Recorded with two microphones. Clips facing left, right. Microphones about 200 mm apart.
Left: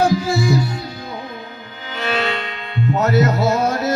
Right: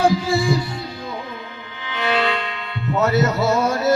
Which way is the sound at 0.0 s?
40° left (ahead or behind).